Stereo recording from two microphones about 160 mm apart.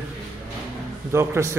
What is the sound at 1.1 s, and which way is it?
Speech, 15° right (ahead or behind).